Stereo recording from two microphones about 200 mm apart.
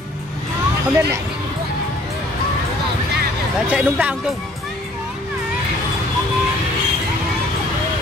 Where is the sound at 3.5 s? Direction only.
5° right (ahead or behind).